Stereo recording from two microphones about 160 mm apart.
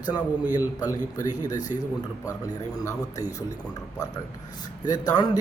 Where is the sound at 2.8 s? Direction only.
20° left (ahead or behind).